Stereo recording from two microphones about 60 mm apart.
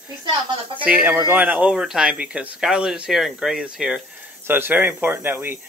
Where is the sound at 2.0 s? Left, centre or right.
Centre.